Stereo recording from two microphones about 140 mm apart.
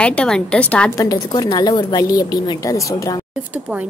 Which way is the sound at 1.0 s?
25° left (ahead or behind).